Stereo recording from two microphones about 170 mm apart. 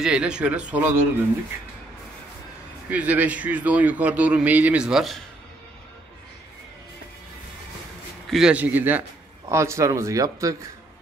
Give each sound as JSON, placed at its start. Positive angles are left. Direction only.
{"t": 0.0, "sound": "a man's voice", "side_deg": -5}
{"t": 2.9, "sound": "a man's voice", "side_deg": -10}
{"t": 8.3, "sound": "a man's voice", "side_deg": -5}